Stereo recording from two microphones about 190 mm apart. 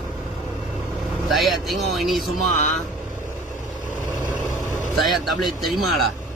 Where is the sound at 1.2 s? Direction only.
Centre (ahead or behind).